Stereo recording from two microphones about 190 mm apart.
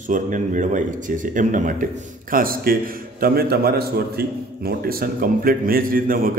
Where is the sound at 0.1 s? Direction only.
40° right (ahead or behind).